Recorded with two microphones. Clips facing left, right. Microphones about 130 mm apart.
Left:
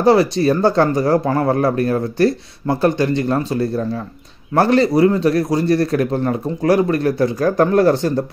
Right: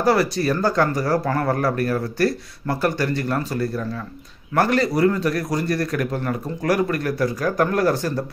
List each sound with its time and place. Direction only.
0.0 s speech: 25° left (ahead or behind)